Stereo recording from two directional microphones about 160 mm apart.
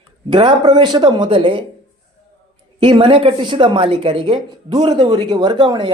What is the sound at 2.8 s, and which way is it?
A woman's voice, 30° right (ahead or behind).